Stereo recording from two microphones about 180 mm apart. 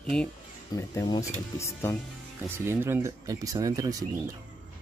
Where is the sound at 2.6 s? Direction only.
10° right (ahead or behind).